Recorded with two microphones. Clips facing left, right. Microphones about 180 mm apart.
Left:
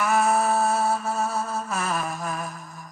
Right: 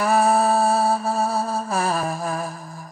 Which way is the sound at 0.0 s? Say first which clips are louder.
Right 4 dB; 35° right (ahead or behind).